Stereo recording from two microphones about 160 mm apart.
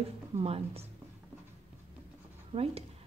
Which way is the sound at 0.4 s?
40° right (ahead or behind).